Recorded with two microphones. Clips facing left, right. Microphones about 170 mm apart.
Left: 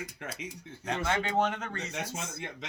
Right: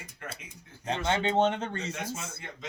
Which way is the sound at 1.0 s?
25° right (ahead or behind).